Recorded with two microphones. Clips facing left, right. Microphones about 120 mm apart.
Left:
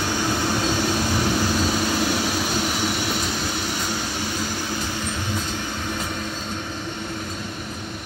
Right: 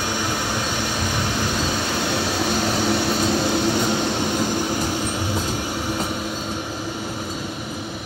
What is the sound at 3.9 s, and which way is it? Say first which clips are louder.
Vehicle: right 6 dB; 25° right (ahead or behind).